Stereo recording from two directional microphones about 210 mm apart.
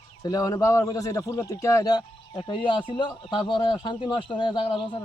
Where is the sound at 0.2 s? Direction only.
15° left (ahead or behind).